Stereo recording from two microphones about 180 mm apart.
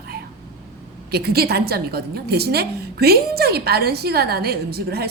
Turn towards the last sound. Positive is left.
turn(degrees=-60)  # may be behind; listen again after turning